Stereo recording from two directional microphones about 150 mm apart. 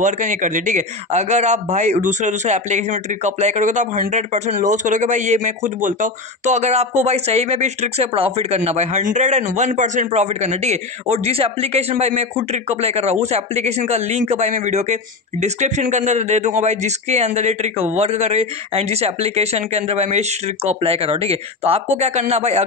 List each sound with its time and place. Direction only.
0.0 s a man's voice: 60° right (ahead or behind)